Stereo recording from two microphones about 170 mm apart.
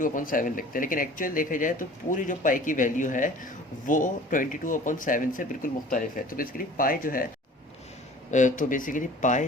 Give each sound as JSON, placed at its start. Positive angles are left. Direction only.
{"t": 0.0, "sound": "speech", "side_deg": 50}
{"t": 8.3, "sound": "speech", "side_deg": 45}